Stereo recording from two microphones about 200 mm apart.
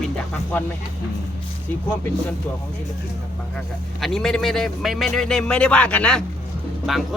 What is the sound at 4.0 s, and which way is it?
Speech, centre (ahead or behind).